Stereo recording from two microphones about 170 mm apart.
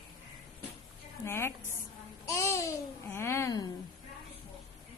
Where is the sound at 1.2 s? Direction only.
15° left (ahead or behind).